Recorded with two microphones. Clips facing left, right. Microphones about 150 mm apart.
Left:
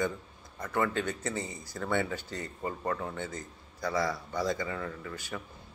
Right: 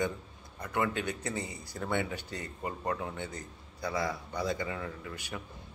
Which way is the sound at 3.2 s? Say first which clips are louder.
Left 2 dB; 45° left (ahead or behind).